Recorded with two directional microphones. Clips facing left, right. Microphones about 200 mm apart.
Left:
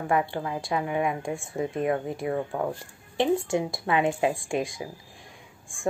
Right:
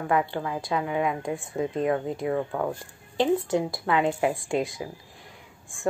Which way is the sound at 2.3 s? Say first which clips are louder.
Right 1 dB; 30° left (ahead or behind).